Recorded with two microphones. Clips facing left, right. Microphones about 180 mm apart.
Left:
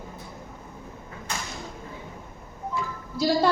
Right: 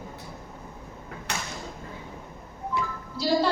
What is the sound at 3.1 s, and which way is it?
Speech, 50° left (ahead or behind).